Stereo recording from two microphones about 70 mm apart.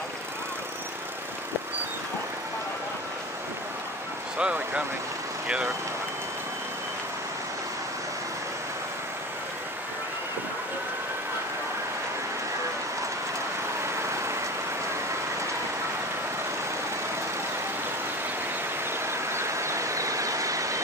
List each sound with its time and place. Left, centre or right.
4.4 s speech: centre
13.8 s vehicle: right
19.0 s vehicle: right